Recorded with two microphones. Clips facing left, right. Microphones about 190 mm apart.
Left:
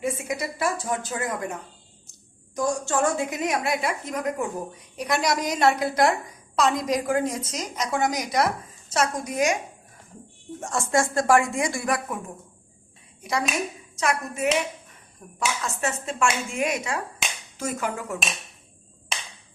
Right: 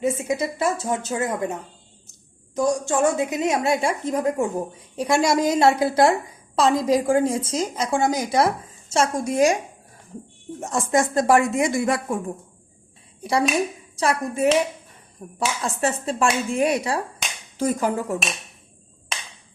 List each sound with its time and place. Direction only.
0.0 s a woman's voice: 25° right (ahead or behind)
2.6 s a woman's voice: 20° right (ahead or behind)
10.6 s a woman's voice: 20° right (ahead or behind)
13.9 s speech: 30° right (ahead or behind)